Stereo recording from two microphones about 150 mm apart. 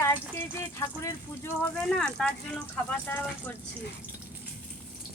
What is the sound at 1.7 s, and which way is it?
Speech, 5° left (ahead or behind).